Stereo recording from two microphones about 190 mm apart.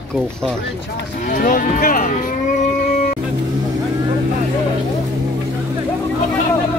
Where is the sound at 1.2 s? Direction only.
45° left (ahead or behind).